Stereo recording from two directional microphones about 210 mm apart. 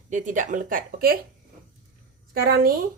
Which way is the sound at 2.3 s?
45° right (ahead or behind).